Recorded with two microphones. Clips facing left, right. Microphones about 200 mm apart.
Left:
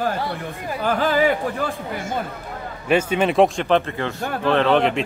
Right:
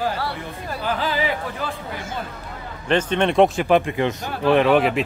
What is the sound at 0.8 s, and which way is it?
Speech, 50° left (ahead or behind).